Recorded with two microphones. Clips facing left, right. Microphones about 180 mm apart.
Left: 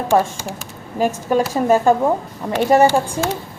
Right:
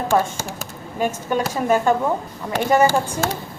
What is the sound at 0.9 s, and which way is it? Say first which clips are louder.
Speech: left 4 dB; 35° left (ahead or behind).